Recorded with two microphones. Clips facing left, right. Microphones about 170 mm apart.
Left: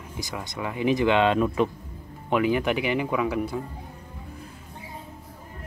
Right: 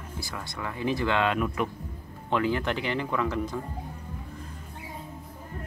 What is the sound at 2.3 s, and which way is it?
Speech, 15° left (ahead or behind).